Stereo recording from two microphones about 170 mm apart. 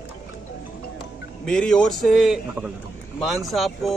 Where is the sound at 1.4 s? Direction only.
5° left (ahead or behind).